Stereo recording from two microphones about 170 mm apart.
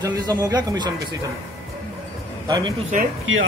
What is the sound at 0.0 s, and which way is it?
Speech, 20° right (ahead or behind).